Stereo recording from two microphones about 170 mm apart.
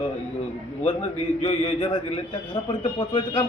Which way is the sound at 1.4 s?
35° left (ahead or behind).